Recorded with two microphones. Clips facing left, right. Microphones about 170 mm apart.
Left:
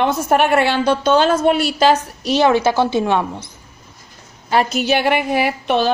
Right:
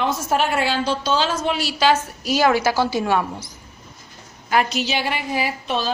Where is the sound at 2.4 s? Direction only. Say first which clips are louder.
Left 4 dB; 25° left (ahead or behind).